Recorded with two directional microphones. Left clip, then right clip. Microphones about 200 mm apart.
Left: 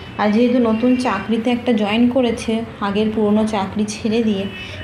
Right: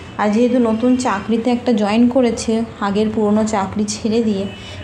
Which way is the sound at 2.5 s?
20° right (ahead or behind).